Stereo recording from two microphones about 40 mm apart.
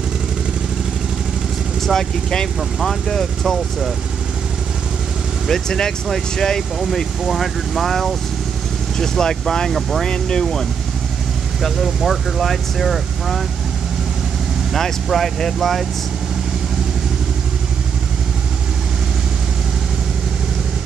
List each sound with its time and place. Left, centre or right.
1.8 s speech: centre
5.5 s speech: centre
6.8 s speech: centre
8.9 s speech: centre
9.7 s speech: centre
10.0 s speech: centre
11.6 s speech: centre
14.7 s speech: centre